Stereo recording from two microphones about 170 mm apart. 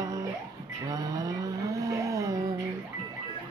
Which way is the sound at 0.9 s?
20° right (ahead or behind).